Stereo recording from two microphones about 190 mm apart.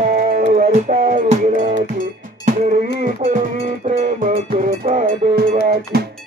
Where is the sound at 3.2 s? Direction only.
30° right (ahead or behind).